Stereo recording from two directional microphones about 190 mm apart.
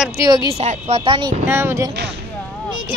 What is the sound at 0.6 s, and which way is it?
Speech, 35° right (ahead or behind).